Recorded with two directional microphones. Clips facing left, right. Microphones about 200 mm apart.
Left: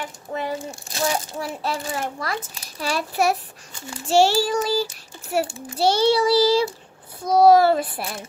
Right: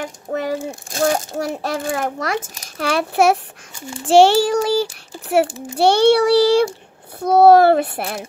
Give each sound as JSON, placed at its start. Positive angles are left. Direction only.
{"t": 0.0, "sound": "a child's voice", "side_deg": -45}
{"t": 5.8, "sound": "a child's voice", "side_deg": -65}